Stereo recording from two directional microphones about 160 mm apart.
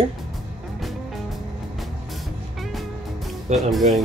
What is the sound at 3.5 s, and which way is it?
Speech, 45° right (ahead or behind).